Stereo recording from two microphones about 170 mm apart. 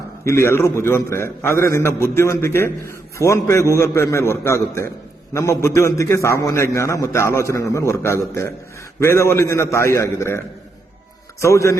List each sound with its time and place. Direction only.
0.3 s a man's voice: 15° left (ahead or behind)
11.4 s a man's voice: 15° left (ahead or behind)